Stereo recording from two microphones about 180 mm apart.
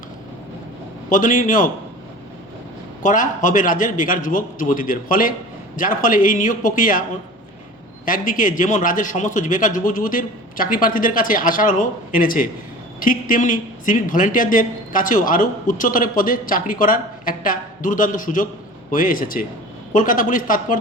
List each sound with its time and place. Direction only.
1.1 s a man's voice: 45° left (ahead or behind)
3.0 s a man's voice: 45° left (ahead or behind)
8.0 s a man's voice: 50° left (ahead or behind)